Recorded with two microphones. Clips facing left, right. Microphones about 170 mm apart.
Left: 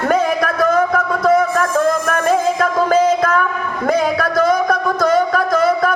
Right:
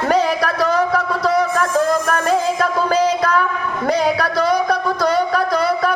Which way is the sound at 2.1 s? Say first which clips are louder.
Left 2 dB; 50° left (ahead or behind).